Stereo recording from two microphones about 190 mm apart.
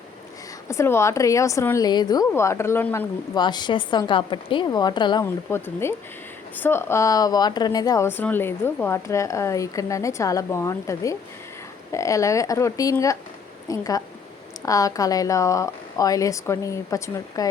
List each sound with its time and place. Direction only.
0.7 s speech: 15° left (ahead or behind)
3.3 s a woman's voice: 25° left (ahead or behind)
5.2 s a woman's voice: 10° left (ahead or behind)